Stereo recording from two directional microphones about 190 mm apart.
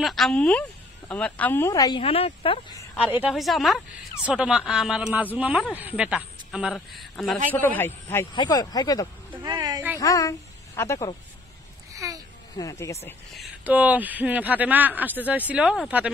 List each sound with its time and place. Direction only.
0.0 s speech: centre (ahead or behind); by 2.8 s 30° left (ahead or behind)
3.1 s a man's voice: 5° right (ahead or behind)
7.5 s speech: 10° left (ahead or behind)
8.4 s speech: 20° left (ahead or behind)
9.4 s a sound: 20° right (ahead or behind)
9.9 s a woman's voice: 15° left (ahead or behind)
11.9 s a sound: 15° right (ahead or behind)
12.5 s speech: 15° left (ahead or behind)
13.3 s speech: 5° right (ahead or behind)